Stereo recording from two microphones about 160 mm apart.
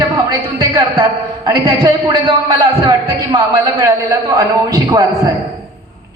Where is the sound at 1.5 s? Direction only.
30° right (ahead or behind).